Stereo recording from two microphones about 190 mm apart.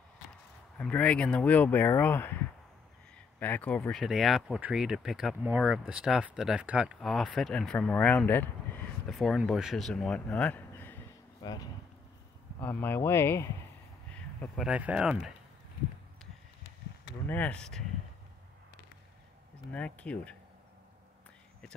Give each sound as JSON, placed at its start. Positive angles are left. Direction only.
{"t": 0.7, "sound": "speech", "side_deg": 5}
{"t": 11.4, "sound": "speech", "side_deg": 20}
{"t": 12.5, "sound": "speech", "side_deg": 10}
{"t": 14.1, "sound": "a sound", "side_deg": 5}
{"t": 14.7, "sound": "speech", "side_deg": -5}
{"t": 17.3, "sound": "speech", "side_deg": 5}
{"t": 19.7, "sound": "speech", "side_deg": 5}